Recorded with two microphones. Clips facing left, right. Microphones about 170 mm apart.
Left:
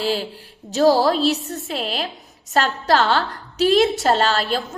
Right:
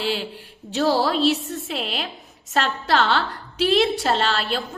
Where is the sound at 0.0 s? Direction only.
40° left (ahead or behind).